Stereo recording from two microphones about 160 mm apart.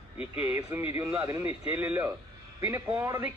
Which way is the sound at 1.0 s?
15° right (ahead or behind).